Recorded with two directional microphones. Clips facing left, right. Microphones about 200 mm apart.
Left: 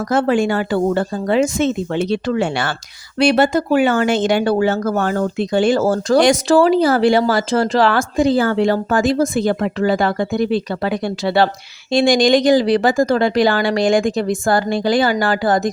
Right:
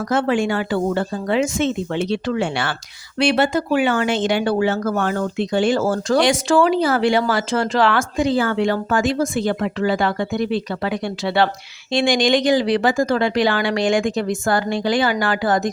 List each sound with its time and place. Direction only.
0.1 s speech: 40° left (ahead or behind)